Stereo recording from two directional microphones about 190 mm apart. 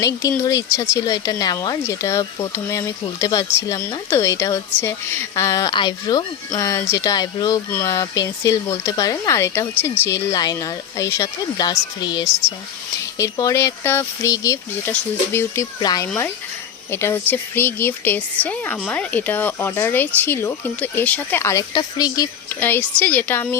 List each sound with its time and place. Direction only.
0.0 s speech: 15° left (ahead or behind)